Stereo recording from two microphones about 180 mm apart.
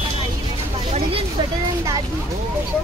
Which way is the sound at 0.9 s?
30° right (ahead or behind).